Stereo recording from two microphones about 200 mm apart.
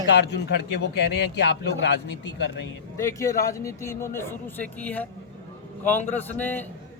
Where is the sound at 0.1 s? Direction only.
55° left (ahead or behind).